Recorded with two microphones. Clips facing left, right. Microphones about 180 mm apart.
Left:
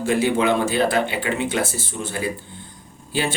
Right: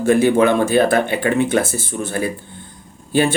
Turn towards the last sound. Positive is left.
turn(degrees=-50)  # may be behind; listen again after turning